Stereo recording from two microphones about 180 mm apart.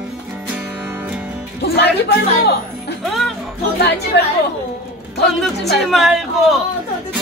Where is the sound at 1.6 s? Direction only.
60° left (ahead or behind).